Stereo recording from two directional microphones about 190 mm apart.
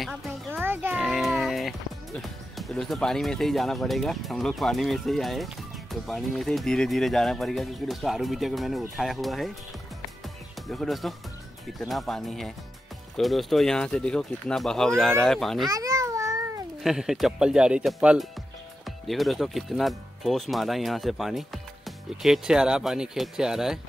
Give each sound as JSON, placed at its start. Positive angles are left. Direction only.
{"t": 0.0, "sound": "music", "side_deg": 0}
{"t": 0.5, "sound": "music", "side_deg": -10}
{"t": 0.9, "sound": "speech", "side_deg": 0}
{"t": 10.7, "sound": "speech", "side_deg": 0}
{"t": 15.7, "sound": "a sound", "side_deg": -15}
{"t": 16.8, "sound": "speech", "side_deg": 0}